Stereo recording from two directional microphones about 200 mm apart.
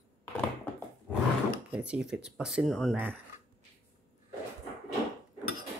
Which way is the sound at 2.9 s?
10° right (ahead or behind).